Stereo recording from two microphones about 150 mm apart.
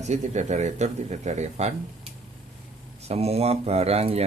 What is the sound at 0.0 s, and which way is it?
Speech, 50° right (ahead or behind).